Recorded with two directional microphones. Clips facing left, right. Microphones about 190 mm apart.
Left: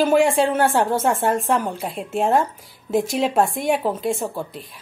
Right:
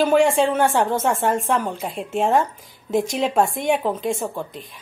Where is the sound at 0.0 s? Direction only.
5° left (ahead or behind).